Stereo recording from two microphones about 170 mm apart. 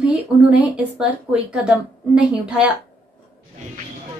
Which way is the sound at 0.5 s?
5° right (ahead or behind).